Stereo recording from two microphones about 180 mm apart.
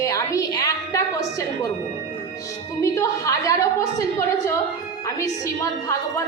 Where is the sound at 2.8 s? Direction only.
20° left (ahead or behind).